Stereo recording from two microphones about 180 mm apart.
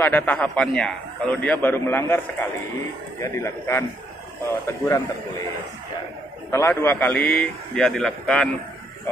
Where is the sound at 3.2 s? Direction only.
15° left (ahead or behind).